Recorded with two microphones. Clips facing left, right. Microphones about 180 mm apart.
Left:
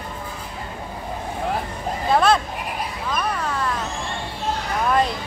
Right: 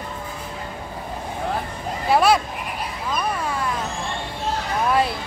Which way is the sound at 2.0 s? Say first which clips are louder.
Right 1 dB; 10° right (ahead or behind).